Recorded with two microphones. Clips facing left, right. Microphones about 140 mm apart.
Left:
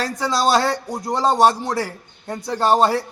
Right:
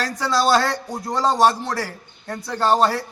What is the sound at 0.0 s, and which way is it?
A man's voice, 15° left (ahead or behind).